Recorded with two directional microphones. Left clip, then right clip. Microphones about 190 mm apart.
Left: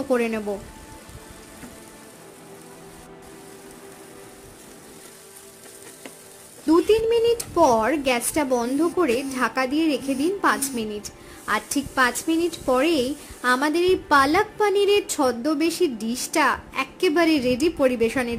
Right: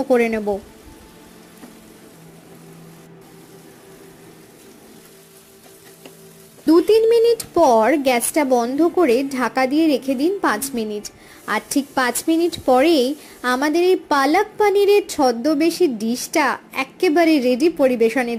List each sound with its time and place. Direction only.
0.1 s a woman's voice: 15° right (ahead or behind)
6.6 s a woman's voice: 25° right (ahead or behind)